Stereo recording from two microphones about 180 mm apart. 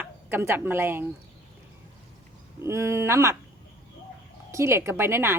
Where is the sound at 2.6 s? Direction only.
15° right (ahead or behind).